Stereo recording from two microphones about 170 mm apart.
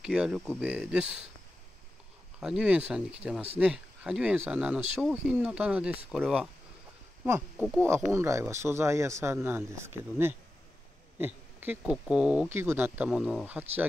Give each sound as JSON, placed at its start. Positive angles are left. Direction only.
{"t": 0.0, "sound": "speech", "side_deg": -5}
{"t": 2.4, "sound": "speech", "side_deg": -5}
{"t": 7.5, "sound": "speech", "side_deg": 0}
{"t": 8.1, "sound": "speech", "side_deg": -15}